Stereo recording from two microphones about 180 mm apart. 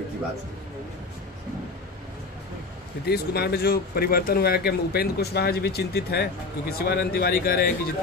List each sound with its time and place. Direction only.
3.1 s speech: 60° left (ahead or behind)